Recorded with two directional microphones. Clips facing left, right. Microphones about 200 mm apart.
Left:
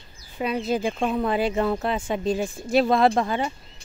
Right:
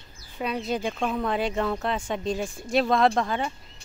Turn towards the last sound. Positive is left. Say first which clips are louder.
# left 2 dB
turn(degrees=5)  # may be behind; listen again after turning